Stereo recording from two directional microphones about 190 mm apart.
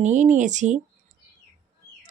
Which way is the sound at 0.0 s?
40° right (ahead or behind).